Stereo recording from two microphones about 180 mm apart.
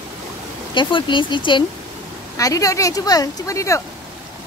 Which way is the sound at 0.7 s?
25° left (ahead or behind).